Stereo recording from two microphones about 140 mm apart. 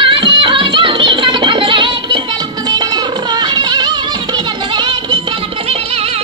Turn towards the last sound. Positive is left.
turn(degrees=-35)  # may be behind; listen again after turning